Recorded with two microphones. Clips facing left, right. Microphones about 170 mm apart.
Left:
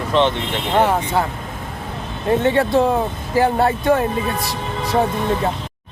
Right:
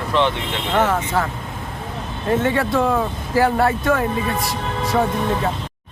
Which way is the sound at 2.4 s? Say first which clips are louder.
Left 4 dB; 25° left (ahead or behind).